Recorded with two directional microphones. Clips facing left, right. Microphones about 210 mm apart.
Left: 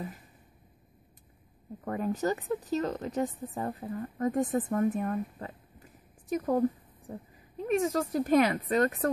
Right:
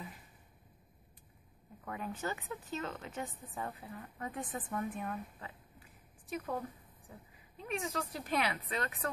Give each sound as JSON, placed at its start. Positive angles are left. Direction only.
{"t": 1.9, "sound": "a woman's voice", "side_deg": 45}
{"t": 7.6, "sound": "a woman's voice", "side_deg": 45}